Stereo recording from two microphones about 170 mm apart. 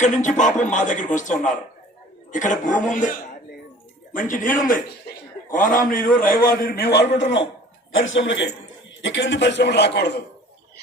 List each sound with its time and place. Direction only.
0.0 s a man's voice: 45° left (ahead or behind)
2.3 s a man's voice: 50° left (ahead or behind); by 7.1 s 75° left (ahead or behind)
7.2 s a man's voice: 90° left